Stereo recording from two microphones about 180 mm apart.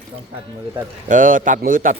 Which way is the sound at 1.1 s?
45° right (ahead or behind).